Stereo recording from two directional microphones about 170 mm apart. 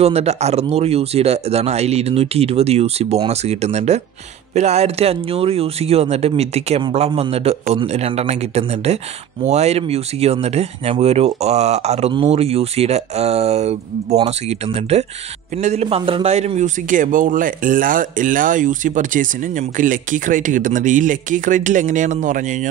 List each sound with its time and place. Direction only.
0.0 s a man's voice: 40° right (ahead or behind)